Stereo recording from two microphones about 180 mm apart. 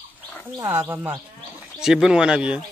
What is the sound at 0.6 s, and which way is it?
Speech, 10° right (ahead or behind).